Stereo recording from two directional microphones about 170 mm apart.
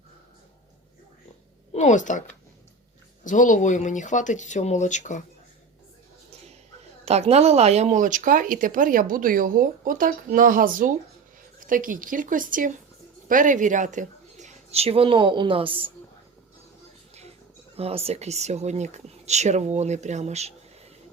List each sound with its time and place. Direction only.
1.7 s speech: 45° left (ahead or behind)
3.2 s speech: 50° left (ahead or behind)
7.0 s speech: 40° right (ahead or behind)
17.7 s speech: 35° right (ahead or behind)